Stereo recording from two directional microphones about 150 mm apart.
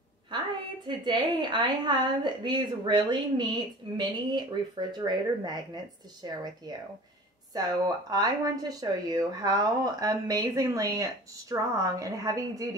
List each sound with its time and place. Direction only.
0.8 s speech: 30° right (ahead or behind)
7.5 s speech: 25° right (ahead or behind)